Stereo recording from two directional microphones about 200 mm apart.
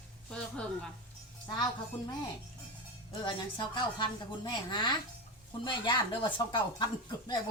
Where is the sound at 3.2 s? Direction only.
25° left (ahead or behind).